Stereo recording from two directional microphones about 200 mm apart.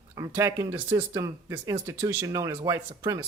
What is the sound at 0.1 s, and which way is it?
Speech, 15° right (ahead or behind).